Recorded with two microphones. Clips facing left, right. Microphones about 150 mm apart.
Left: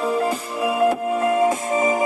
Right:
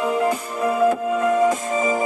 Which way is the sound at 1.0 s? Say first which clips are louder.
Even; 30° left (ahead or behind).